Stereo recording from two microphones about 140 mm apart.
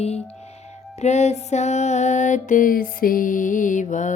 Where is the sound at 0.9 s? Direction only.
55° left (ahead or behind).